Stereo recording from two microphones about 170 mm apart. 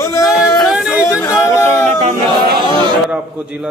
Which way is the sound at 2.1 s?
60° right (ahead or behind).